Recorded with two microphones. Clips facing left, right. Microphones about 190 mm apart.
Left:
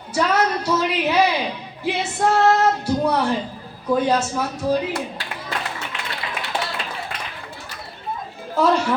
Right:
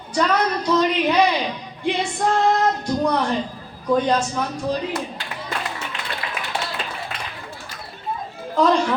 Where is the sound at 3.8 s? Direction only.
5° left (ahead or behind).